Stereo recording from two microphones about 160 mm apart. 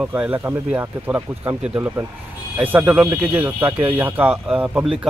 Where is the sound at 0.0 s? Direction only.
10° right (ahead or behind).